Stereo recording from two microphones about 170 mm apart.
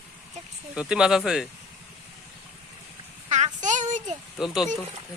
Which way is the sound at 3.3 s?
45° right (ahead or behind).